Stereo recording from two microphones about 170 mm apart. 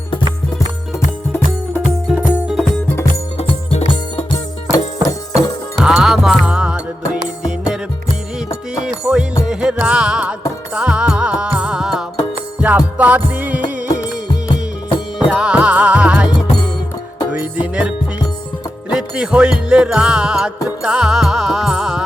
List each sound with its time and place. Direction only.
2.0 s music: 5° right (ahead or behind)
3.3 s music: 40° left (ahead or behind)
5.3 s music: centre (ahead or behind)
15.3 s music: 5° right (ahead or behind)
17.3 s music: 10° right (ahead or behind)